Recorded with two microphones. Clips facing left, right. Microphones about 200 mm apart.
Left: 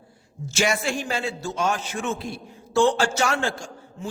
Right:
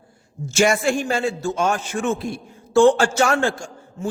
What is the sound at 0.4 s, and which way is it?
A man's voice, 50° right (ahead or behind).